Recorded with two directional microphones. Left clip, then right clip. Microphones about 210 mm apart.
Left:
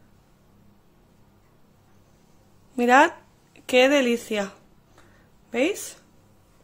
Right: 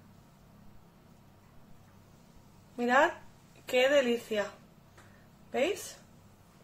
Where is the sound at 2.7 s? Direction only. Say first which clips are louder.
Left 9 dB; 50° left (ahead or behind).